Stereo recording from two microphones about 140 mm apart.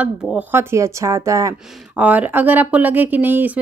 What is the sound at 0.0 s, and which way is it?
Speech, 10° right (ahead or behind).